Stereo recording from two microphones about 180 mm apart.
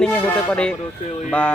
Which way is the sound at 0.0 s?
5° left (ahead or behind).